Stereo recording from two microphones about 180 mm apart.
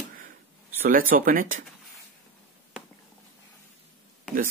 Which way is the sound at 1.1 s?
50° right (ahead or behind).